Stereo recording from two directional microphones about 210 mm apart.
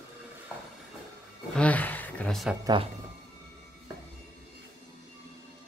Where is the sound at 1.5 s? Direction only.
5° left (ahead or behind).